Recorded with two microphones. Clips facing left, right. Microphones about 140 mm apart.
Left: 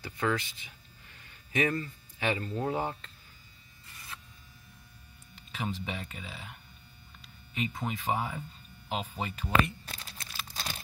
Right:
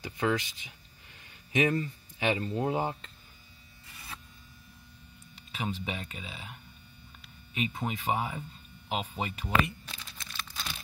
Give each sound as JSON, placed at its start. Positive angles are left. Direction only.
{"t": 0.0, "sound": "speech", "side_deg": -15}
{"t": 5.5, "sound": "speech", "side_deg": -10}
{"t": 7.6, "sound": "speech", "side_deg": -10}
{"t": 10.5, "sound": "crack", "side_deg": 35}